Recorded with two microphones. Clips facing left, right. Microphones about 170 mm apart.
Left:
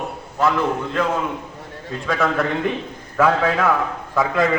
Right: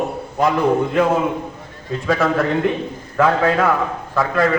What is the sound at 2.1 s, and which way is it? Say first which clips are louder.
A man's voice: right 3 dB; 5° right (ahead or behind).